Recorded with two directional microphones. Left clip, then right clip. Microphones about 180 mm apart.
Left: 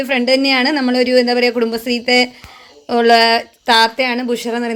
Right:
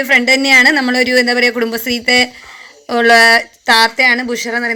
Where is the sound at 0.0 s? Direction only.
Centre (ahead or behind).